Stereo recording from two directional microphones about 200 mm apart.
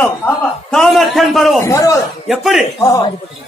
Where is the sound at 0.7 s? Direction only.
Centre (ahead or behind).